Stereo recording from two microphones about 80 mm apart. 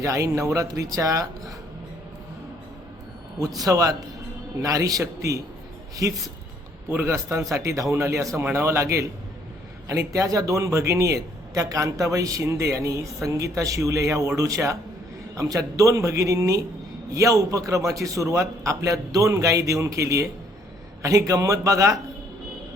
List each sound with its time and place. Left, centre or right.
0.0 s a man's voice: right
3.6 s a man's voice: right